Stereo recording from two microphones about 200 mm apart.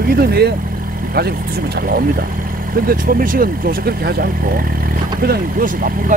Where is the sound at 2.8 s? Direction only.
45° right (ahead or behind).